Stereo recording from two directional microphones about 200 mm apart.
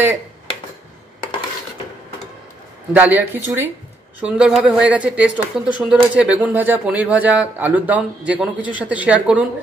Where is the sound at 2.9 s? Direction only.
10° right (ahead or behind).